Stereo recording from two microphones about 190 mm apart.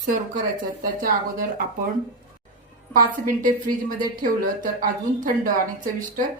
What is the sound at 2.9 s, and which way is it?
A woman's voice, 45° right (ahead or behind).